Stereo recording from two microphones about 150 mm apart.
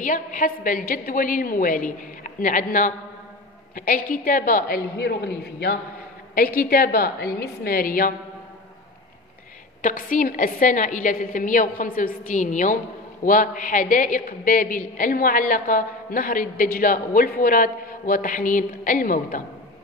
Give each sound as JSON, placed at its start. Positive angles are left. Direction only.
{"t": 0.0, "sound": "a woman's voice", "side_deg": 60}
{"t": 6.3, "sound": "a woman's voice", "side_deg": 80}
{"t": 7.6, "sound": "a woman's voice", "side_deg": 75}
{"t": 9.8, "sound": "a woman's voice", "side_deg": 65}
{"t": 12.2, "sound": "a woman's voice", "side_deg": 55}